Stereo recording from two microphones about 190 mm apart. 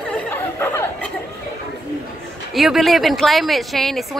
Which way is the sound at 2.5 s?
Centre (ahead or behind).